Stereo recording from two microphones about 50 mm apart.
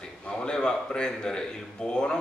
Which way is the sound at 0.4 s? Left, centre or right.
Centre.